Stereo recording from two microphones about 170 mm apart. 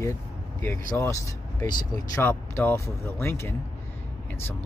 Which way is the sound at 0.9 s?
20° left (ahead or behind).